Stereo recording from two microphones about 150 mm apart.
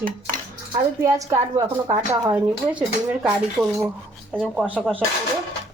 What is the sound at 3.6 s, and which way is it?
Speech, 20° right (ahead or behind).